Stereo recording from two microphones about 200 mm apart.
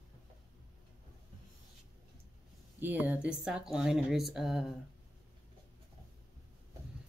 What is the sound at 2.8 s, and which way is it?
Speech, 10° right (ahead or behind).